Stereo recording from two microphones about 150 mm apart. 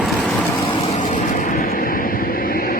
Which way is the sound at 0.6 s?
60° left (ahead or behind).